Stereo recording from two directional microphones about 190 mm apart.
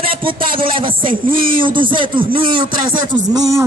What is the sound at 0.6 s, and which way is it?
Speech, 25° right (ahead or behind).